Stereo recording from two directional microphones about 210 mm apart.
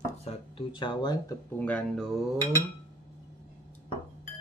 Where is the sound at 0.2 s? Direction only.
25° left (ahead or behind).